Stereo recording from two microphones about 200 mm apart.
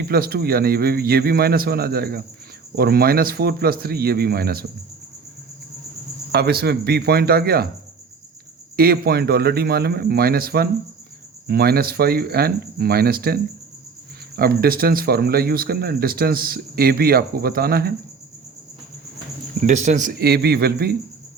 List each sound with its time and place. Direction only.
0.0 s speech: 50° right (ahead or behind)
6.3 s speech: 50° right (ahead or behind)
8.7 s speech: 50° right (ahead or behind)
19.6 s speech: 40° right (ahead or behind)